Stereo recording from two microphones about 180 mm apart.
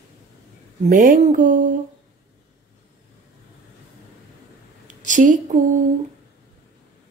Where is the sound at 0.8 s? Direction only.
45° right (ahead or behind).